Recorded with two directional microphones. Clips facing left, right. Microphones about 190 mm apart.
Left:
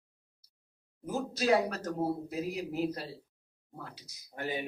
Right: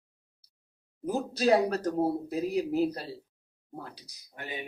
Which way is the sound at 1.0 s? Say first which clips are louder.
Right 4 dB; 35° right (ahead or behind).